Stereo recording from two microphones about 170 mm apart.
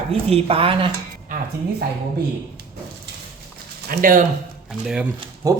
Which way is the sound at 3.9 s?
55° right (ahead or behind).